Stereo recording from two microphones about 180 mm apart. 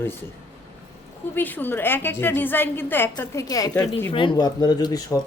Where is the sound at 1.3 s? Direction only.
10° left (ahead or behind).